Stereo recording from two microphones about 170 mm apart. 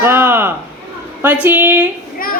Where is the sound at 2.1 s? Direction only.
55° left (ahead or behind).